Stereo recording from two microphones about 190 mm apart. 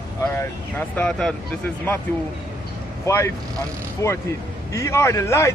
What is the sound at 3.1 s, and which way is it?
Speech, 15° left (ahead or behind).